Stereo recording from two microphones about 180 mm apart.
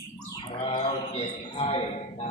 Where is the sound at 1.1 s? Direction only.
30° left (ahead or behind).